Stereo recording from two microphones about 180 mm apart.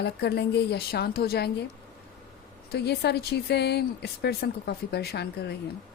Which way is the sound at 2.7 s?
65° left (ahead or behind).